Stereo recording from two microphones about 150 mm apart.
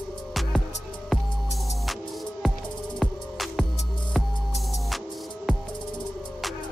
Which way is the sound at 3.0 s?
Centre (ahead or behind).